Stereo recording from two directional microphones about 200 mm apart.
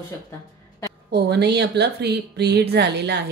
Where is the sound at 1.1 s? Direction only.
55° right (ahead or behind).